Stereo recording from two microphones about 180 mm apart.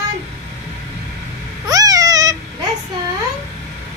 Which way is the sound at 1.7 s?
20° right (ahead or behind).